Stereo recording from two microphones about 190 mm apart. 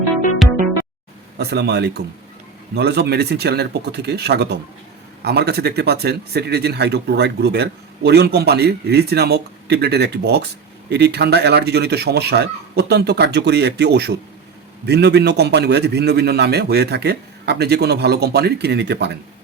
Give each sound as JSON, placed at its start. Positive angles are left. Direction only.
{"t": 1.4, "sound": "speech", "side_deg": -60}